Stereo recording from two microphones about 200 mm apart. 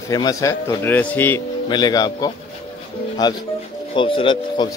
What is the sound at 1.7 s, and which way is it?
Speech, 20° left (ahead or behind).